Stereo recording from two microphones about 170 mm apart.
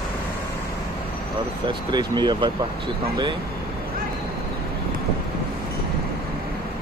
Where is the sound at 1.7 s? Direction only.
25° right (ahead or behind).